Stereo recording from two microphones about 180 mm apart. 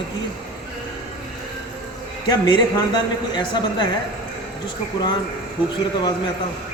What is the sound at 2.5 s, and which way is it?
Speech, 25° left (ahead or behind).